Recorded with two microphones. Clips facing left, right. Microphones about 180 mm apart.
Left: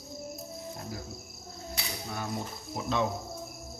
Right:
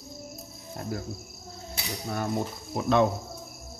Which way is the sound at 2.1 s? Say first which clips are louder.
Right 8 dB; 50° right (ahead or behind).